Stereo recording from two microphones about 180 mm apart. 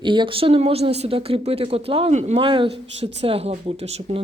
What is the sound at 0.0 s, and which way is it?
Speech, 25° right (ahead or behind).